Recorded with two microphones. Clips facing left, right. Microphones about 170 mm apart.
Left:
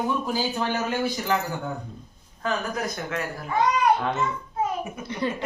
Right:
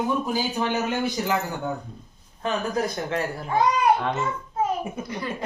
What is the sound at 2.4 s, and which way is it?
Speech, 30° right (ahead or behind).